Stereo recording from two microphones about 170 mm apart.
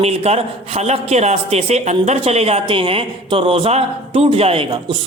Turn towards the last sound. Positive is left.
turn(degrees=-30)  # may be behind; listen again after turning